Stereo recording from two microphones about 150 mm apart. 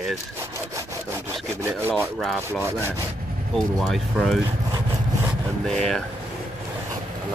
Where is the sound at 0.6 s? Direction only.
20° right (ahead or behind).